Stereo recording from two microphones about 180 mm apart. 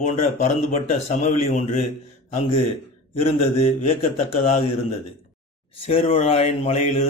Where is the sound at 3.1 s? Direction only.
35° left (ahead or behind).